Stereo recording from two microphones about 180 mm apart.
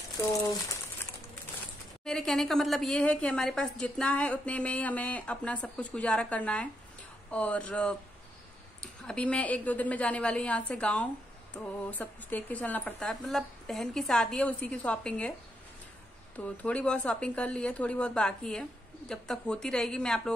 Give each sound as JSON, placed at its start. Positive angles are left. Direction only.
{"t": 2.0, "sound": "a woman's voice", "side_deg": 5}
{"t": 16.3, "sound": "speech", "side_deg": 5}